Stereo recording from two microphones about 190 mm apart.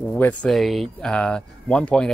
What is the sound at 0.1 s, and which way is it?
Speech, 5° left (ahead or behind).